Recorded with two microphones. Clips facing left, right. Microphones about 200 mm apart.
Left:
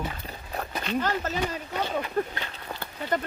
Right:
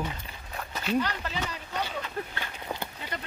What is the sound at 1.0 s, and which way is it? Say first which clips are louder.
Speech: left 5 dB; 45° left (ahead or behind).